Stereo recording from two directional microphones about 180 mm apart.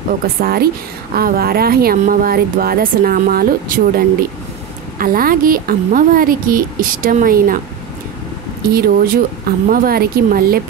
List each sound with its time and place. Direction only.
0.4 s a woman's voice: 55° right (ahead or behind)
8.6 s speech: 55° right (ahead or behind)